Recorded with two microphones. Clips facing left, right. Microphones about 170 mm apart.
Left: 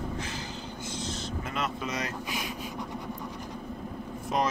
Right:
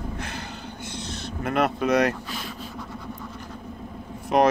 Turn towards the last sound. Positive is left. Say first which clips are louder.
# right 9 dB
turn(degrees=-65)  # may be behind; listen again after turning